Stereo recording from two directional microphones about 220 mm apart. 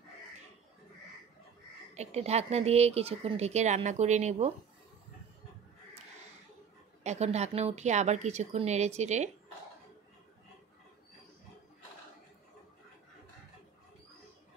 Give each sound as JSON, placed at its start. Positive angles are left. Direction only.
{"t": 2.0, "sound": "speech", "side_deg": -30}
{"t": 7.0, "sound": "speech", "side_deg": -30}